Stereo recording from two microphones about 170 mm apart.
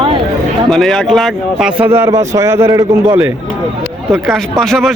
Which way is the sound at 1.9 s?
15° right (ahead or behind).